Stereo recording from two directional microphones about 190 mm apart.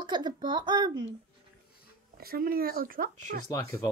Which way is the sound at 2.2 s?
50° right (ahead or behind).